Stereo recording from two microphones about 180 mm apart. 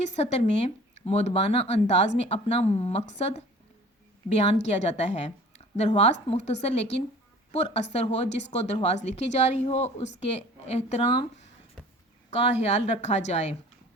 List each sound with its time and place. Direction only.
0.0 s speech: 40° left (ahead or behind)
12.3 s speech: 35° left (ahead or behind)